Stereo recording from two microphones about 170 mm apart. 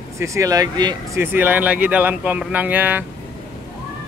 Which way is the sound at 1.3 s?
10° right (ahead or behind).